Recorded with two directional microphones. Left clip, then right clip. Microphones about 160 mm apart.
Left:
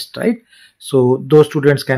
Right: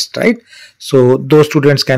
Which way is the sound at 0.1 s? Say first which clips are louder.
Right 2 dB; 20° right (ahead or behind).